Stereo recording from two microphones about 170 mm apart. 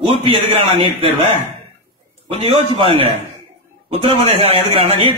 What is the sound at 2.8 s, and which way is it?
A man's voice, 35° right (ahead or behind).